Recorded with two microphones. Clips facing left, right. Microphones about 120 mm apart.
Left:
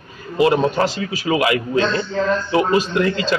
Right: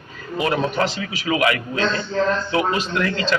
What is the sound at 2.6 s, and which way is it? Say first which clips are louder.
Speech: left 4 dB; 20° left (ahead or behind).